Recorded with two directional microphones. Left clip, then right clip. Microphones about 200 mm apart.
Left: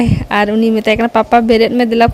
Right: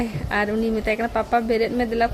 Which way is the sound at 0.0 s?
45° left (ahead or behind).